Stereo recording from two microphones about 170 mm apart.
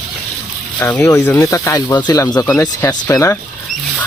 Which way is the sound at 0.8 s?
15° left (ahead or behind).